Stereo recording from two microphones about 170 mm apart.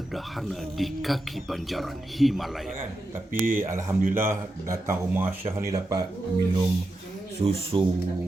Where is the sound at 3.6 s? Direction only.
15° right (ahead or behind).